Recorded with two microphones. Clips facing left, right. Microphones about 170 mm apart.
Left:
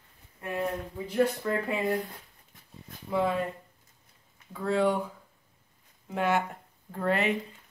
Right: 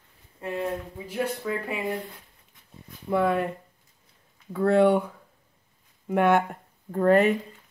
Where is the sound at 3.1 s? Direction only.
60° right (ahead or behind).